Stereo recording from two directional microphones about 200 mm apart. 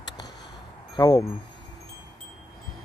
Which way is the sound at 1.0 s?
20° left (ahead or behind).